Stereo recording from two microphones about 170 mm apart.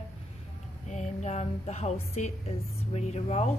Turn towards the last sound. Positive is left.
turn(degrees=40)  # may be behind; listen again after turning